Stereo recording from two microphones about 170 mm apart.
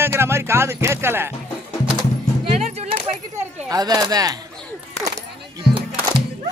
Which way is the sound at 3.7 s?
20° right (ahead or behind).